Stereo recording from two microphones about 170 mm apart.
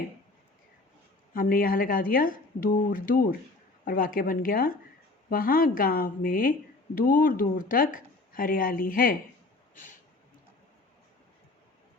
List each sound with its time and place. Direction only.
1.3 s speech: 55° left (ahead or behind)